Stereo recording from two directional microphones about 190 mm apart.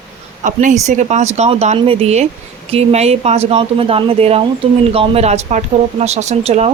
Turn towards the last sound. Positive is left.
turn(degrees=-35)  # may be behind; listen again after turning